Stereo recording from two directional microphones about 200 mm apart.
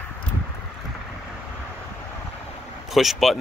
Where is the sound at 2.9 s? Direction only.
Centre (ahead or behind).